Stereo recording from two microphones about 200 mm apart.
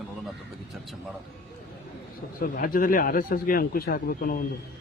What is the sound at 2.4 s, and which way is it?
Speech, 45° left (ahead or behind).